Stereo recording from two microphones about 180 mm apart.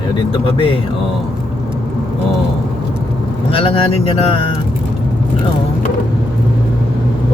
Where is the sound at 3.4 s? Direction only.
30° left (ahead or behind).